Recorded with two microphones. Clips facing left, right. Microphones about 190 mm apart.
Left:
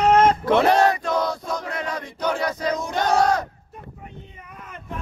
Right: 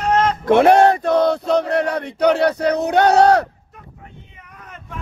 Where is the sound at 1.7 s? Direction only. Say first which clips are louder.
Right 10 dB; 65° right (ahead or behind).